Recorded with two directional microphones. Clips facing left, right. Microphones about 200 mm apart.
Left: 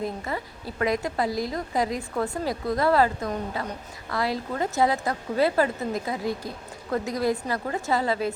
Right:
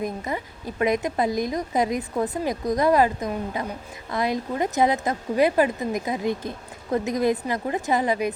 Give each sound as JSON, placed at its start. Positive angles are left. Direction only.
{"t": 0.0, "sound": "a woman's voice", "side_deg": -15}